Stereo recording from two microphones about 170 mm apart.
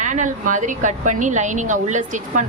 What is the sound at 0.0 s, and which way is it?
A woman's voice, 45° right (ahead or behind).